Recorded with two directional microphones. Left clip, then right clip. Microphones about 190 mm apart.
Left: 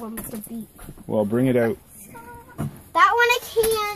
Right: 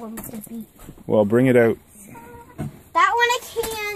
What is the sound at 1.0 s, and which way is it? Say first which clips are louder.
Speech: right 5 dB; 45° right (ahead or behind).